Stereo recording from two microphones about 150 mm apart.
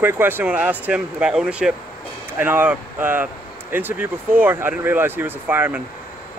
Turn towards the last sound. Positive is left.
turn(degrees=-10)  # may be behind; listen again after turning